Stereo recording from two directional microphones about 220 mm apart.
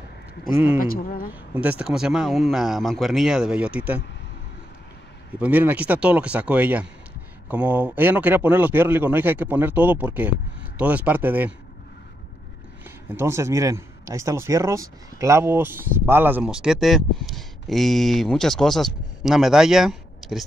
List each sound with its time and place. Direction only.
0.7 s speech: 40° left (ahead or behind)
1.3 s speech: 5° right (ahead or behind)
5.4 s speech: 10° right (ahead or behind)
12.8 s speech: 10° right (ahead or behind)